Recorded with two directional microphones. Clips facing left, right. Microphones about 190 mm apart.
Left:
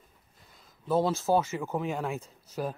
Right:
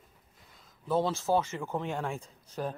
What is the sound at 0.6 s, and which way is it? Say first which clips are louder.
Speech: left 2 dB; 10° left (ahead or behind).